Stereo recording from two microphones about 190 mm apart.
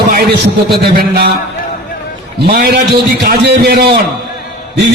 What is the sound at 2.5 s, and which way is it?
A man's voice, 55° right (ahead or behind).